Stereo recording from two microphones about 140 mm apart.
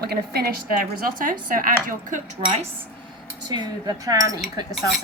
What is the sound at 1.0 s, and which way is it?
Speech, 85° right.